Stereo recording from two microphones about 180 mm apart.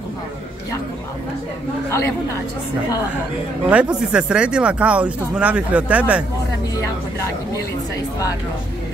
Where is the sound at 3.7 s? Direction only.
5° right (ahead or behind).